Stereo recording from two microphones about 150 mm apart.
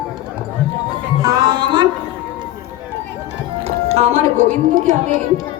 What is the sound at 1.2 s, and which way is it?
Music, 25° right (ahead or behind).